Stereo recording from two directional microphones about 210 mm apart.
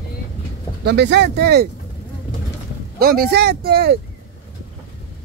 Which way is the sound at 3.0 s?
45° right (ahead or behind).